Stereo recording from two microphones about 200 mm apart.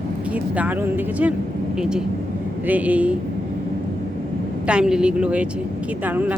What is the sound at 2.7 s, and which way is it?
Speech, 5° right (ahead or behind).